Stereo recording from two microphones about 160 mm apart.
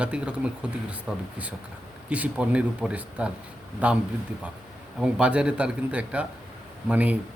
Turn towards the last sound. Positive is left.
turn(degrees=-10)  # may be behind; listen again after turning